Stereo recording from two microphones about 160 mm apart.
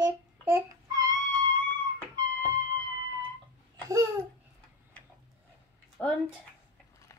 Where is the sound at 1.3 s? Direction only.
30° right (ahead or behind).